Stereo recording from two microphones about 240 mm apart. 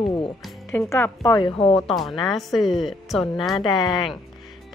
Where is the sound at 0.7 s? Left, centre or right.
Centre.